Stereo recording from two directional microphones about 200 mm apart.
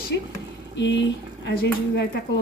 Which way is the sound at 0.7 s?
65° left (ahead or behind).